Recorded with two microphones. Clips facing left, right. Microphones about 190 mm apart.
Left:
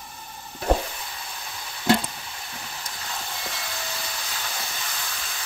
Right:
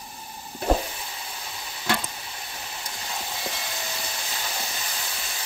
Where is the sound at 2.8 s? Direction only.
20° right (ahead or behind).